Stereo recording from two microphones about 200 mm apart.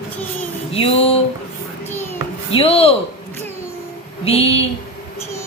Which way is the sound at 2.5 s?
30° left (ahead or behind).